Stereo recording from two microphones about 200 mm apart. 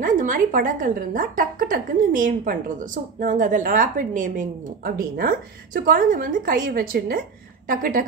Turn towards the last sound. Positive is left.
turn(degrees=-45)  # may be behind; listen again after turning